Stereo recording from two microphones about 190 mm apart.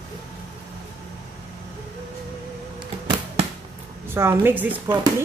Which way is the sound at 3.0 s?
30° right (ahead or behind).